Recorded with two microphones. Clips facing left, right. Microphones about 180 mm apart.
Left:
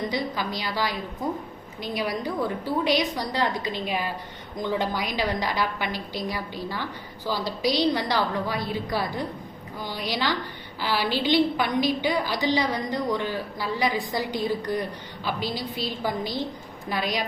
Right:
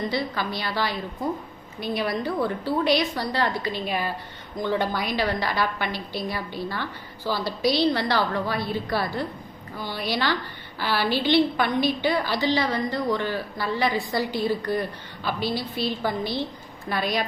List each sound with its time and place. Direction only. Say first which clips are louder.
0.1 s a woman's voice: right 1 dB; 15° left (ahead or behind)
16.9 s a woman's voice: right 2 dB; 10° left (ahead or behind)